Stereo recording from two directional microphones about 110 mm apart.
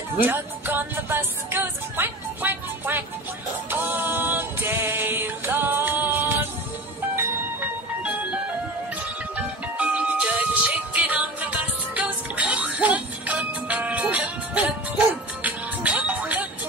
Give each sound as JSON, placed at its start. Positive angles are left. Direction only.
{"t": 0.2, "sound": "music", "side_deg": -20}
{"t": 9.8, "sound": "music", "side_deg": -15}